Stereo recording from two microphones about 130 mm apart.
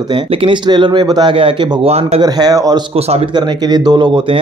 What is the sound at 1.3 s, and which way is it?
Speech, 45° right (ahead or behind).